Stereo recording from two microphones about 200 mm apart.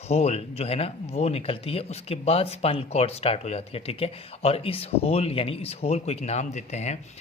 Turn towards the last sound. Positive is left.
turn(degrees=35)  # may be behind; listen again after turning